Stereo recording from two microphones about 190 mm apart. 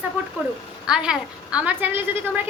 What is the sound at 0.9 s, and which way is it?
A woman's voice, 5° right (ahead or behind).